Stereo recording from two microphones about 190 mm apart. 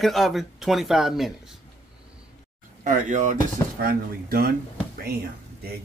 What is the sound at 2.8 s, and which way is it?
Speech, 45° right (ahead or behind).